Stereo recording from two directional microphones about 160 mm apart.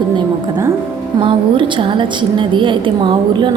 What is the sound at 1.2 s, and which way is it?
A woman's voice, 30° right (ahead or behind).